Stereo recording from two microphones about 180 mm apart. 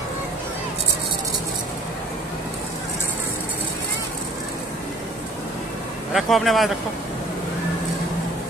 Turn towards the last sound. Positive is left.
turn(degrees=0)  # may be behind; listen again after turning